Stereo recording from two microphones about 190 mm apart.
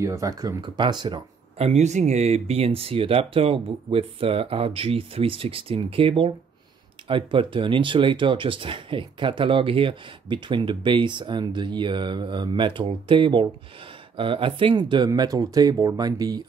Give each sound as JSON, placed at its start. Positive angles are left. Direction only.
{"t": 0.0, "sound": "speech", "side_deg": -15}
{"t": 1.6, "sound": "speech", "side_deg": -35}